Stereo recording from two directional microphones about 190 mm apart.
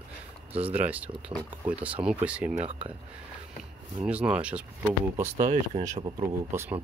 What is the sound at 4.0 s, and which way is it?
Speech, 5° right (ahead or behind).